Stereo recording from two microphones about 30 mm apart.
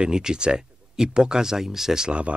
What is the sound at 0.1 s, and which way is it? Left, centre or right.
Speech, right.